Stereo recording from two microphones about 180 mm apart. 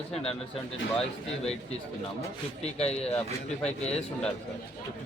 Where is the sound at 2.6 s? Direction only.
35° left (ahead or behind).